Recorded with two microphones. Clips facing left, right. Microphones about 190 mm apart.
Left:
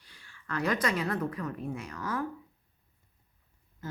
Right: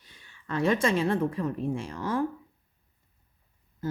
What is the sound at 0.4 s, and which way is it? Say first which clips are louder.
Speech: right 5 dB; 25° right (ahead or behind).